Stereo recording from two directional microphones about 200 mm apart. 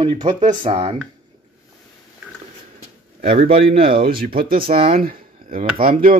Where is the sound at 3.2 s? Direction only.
30° right (ahead or behind).